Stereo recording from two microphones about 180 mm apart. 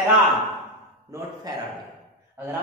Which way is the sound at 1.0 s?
15° right (ahead or behind).